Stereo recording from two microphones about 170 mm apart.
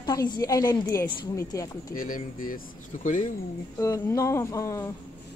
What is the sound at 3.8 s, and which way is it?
Speech, 20° left (ahead or behind).